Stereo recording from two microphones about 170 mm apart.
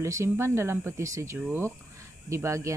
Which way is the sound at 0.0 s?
15° right (ahead or behind).